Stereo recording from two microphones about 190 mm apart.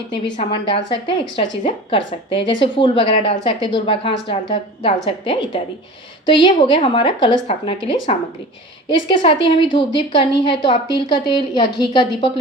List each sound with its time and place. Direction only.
0.3 s a woman's voice: 30° left (ahead or behind)